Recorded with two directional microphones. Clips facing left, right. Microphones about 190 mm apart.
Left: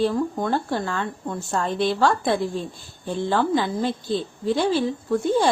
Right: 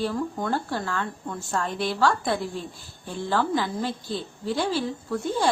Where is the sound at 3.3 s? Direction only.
20° left (ahead or behind).